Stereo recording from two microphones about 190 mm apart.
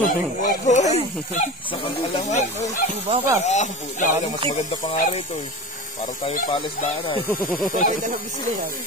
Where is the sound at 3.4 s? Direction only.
40° left (ahead or behind).